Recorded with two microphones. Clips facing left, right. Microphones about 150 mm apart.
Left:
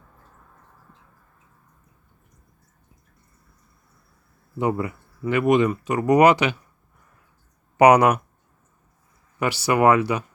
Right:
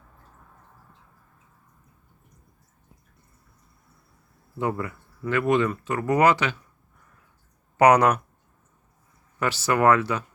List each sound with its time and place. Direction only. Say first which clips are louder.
4.5 s speech: left 4 dB; 15° left (ahead or behind)
7.8 s speech: left 3 dB; 10° left (ahead or behind)
9.4 s speech: left 3 dB; 15° left (ahead or behind)